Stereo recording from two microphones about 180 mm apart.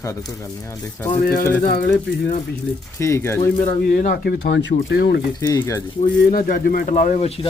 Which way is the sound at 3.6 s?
50° left (ahead or behind).